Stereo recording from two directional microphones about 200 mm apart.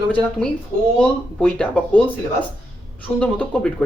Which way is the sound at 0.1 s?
5° left (ahead or behind).